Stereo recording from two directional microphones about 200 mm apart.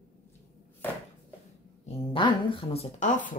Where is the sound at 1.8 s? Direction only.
30° left (ahead or behind).